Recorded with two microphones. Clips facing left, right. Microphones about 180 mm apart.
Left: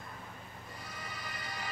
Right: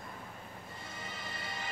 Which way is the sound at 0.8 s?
25° right (ahead or behind).